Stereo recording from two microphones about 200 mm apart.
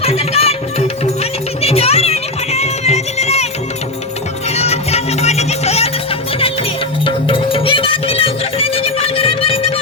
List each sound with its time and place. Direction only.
0.0 s music: 30° left (ahead or behind)
4.5 s music: 30° left (ahead or behind)
7.0 s music: 25° left (ahead or behind)